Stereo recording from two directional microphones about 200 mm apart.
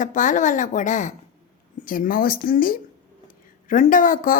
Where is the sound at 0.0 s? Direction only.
40° left (ahead or behind).